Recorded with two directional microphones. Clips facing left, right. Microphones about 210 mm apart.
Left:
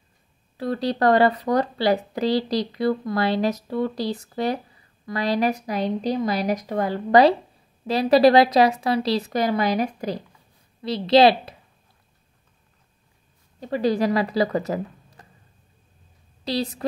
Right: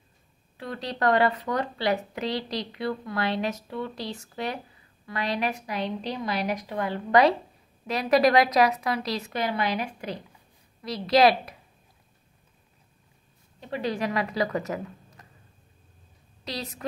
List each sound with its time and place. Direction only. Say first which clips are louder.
0.6 s speech: left 8 dB; 35° left (ahead or behind)
10.8 s a woman's voice: left 5 dB; 30° left (ahead or behind)
13.6 s speech: left 7 dB; 40° left (ahead or behind)
16.4 s speech: left 9 dB; 30° left (ahead or behind)